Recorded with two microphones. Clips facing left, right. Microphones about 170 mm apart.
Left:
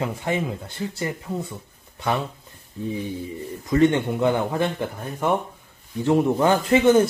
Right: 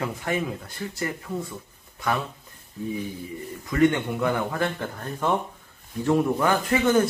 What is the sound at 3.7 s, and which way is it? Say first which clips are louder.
Speech: left 3 dB; 25° left (ahead or behind).